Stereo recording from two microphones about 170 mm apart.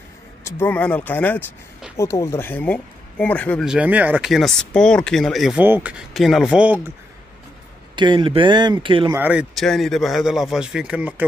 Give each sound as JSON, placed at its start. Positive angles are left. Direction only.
{"t": 0.4, "sound": "speech", "side_deg": 15}
{"t": 3.6, "sound": "speech", "side_deg": -5}
{"t": 7.9, "sound": "speech", "side_deg": -25}
{"t": 9.1, "sound": "speech", "side_deg": -10}